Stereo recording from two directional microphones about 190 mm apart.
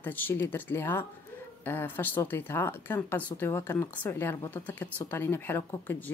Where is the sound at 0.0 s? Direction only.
10° left (ahead or behind).